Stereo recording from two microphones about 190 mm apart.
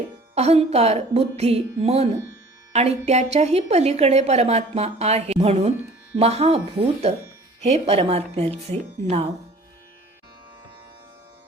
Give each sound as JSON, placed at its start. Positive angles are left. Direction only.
{"t": 0.3, "sound": "a woman's voice", "side_deg": -35}